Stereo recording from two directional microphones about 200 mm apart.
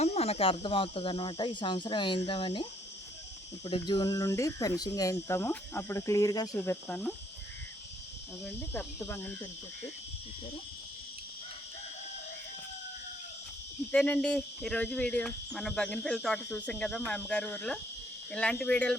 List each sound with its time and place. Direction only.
0.0 s speech: 30° left (ahead or behind); by 7.1 s 10° left (ahead or behind)
8.4 s speech: 5° left (ahead or behind)
13.9 s speech: 5° left (ahead or behind)